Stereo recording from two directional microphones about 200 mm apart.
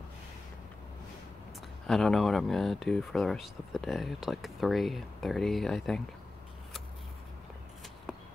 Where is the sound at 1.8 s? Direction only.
Centre (ahead or behind).